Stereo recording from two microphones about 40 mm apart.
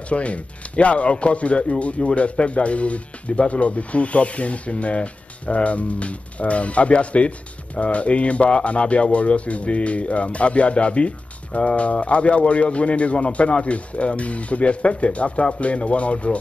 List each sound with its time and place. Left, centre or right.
0.1 s speech: left